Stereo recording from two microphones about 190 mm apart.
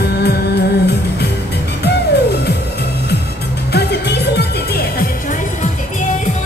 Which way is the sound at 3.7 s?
60° left (ahead or behind).